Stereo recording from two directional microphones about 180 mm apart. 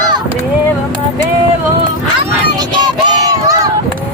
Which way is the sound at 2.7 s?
25° right (ahead or behind).